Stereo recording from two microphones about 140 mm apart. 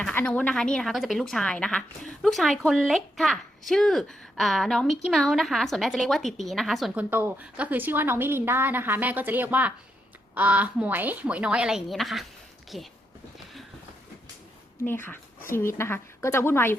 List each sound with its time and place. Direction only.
0.0 s speech: 10° left (ahead or behind)
7.1 s a woman's voice: 15° right (ahead or behind)
14.8 s a woman's voice: 15° left (ahead or behind)